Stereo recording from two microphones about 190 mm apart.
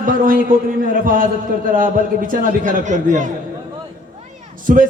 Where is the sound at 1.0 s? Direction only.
45° right (ahead or behind).